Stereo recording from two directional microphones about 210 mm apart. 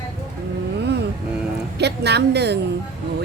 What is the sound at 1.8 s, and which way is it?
Speech, 55° right (ahead or behind).